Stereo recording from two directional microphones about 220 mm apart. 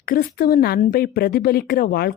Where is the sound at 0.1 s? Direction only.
40° left (ahead or behind).